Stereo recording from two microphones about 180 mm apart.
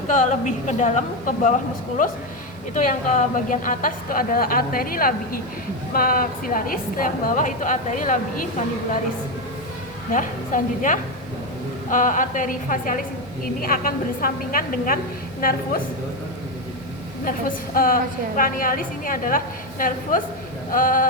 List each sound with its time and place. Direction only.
0.1 s a woman's voice: 45° left (ahead or behind)
2.7 s a woman's voice: 45° left (ahead or behind)
10.1 s a woman's voice: 45° left (ahead or behind)
17.2 s a woman's voice: 50° left (ahead or behind)